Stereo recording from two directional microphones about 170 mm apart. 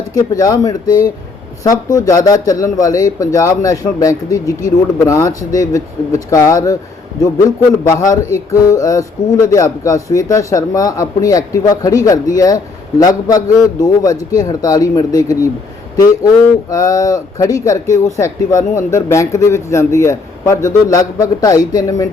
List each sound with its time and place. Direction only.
0.1 s speech: 20° left (ahead or behind)
16.6 s speech: 20° left (ahead or behind)